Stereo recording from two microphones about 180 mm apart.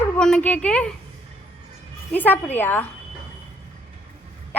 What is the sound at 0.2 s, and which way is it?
Speech, 5° left (ahead or behind).